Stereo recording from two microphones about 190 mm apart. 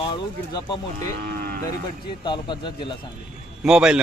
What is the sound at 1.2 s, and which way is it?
Moo, 50° right (ahead or behind).